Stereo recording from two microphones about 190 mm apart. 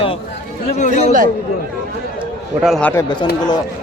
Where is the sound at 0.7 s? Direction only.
40° left (ahead or behind).